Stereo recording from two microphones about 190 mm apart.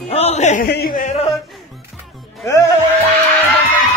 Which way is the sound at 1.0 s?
35° left (ahead or behind).